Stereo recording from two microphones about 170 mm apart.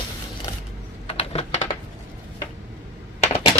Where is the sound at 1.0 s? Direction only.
40° left (ahead or behind).